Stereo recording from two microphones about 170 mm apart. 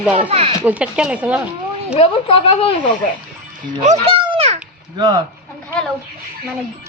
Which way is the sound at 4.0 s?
35° right (ahead or behind).